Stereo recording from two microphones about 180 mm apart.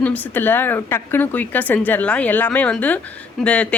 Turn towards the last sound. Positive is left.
turn(degrees=5)  # may be behind; listen again after turning